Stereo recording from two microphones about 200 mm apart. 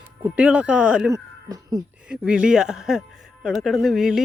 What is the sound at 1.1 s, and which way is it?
Speech, 20° right (ahead or behind).